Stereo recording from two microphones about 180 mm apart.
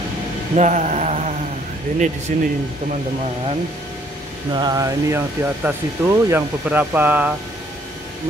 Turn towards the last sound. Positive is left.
turn(degrees=-10)  # may be behind; listen again after turning